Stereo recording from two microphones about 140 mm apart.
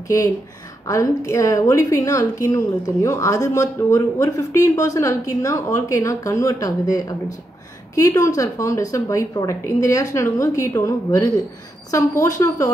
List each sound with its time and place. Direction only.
0.8 s speech: 20° left (ahead or behind)